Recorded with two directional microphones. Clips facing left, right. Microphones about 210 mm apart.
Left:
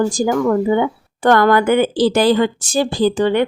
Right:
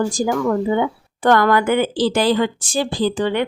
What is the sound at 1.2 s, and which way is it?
Speech, 40° left (ahead or behind).